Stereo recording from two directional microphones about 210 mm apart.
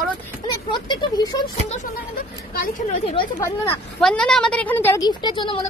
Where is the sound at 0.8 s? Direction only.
20° left (ahead or behind).